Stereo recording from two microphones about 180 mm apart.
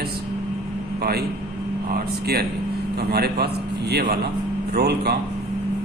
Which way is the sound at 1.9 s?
60° right (ahead or behind).